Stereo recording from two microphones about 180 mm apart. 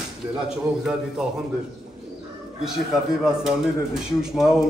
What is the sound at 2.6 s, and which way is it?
Speech, centre (ahead or behind).